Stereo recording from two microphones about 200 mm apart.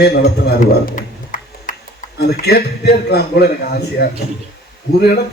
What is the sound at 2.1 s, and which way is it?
A man's voice, 50° left (ahead or behind).